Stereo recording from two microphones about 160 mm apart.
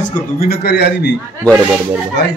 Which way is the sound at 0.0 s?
70° left (ahead or behind).